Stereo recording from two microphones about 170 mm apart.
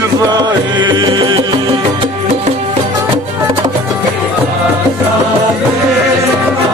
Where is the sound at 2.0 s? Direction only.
40° right (ahead or behind).